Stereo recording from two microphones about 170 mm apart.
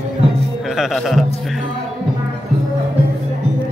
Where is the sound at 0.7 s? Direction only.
Centre (ahead or behind).